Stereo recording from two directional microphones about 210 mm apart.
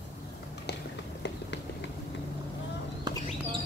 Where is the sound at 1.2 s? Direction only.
55° left (ahead or behind).